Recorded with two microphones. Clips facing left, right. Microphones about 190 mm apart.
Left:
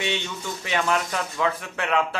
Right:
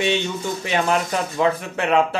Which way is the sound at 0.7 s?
25° right (ahead or behind).